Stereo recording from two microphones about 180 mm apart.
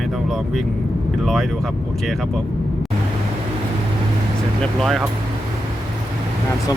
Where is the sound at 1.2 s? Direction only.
Centre (ahead or behind).